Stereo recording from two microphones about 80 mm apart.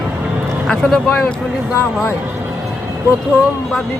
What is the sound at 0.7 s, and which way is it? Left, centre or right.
Speech, centre.